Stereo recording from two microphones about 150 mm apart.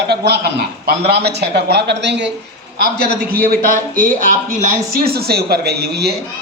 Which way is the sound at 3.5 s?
65° right (ahead or behind).